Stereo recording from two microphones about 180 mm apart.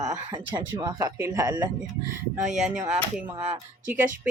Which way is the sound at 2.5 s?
5° right (ahead or behind).